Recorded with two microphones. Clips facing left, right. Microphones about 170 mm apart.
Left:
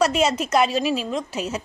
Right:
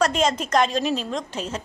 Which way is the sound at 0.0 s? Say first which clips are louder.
Left 1 dB; 10° left (ahead or behind).